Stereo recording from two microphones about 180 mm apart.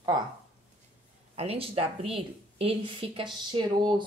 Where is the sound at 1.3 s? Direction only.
35° right (ahead or behind).